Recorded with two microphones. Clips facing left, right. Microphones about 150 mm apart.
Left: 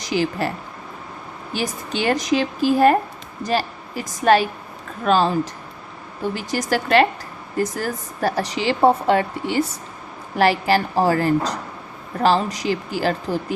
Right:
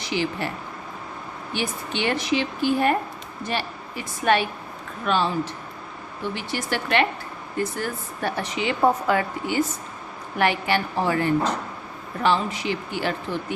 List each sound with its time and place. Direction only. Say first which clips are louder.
0.0 s speech: left 4 dB; 40° left (ahead or behind)
1.5 s a woman's voice: left 3 dB; 40° left (ahead or behind)
6.3 s speech: left 6 dB; 40° left (ahead or behind)